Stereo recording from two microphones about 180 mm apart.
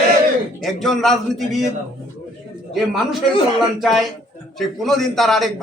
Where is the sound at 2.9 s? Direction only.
Centre (ahead or behind).